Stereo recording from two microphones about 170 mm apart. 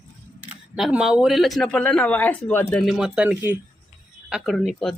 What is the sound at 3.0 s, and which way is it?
Speech, 5° right (ahead or behind).